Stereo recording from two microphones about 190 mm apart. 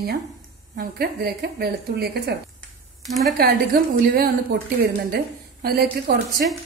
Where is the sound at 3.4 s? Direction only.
55° right (ahead or behind).